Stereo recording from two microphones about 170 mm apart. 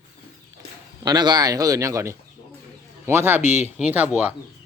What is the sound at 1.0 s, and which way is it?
Speech, 25° right (ahead or behind).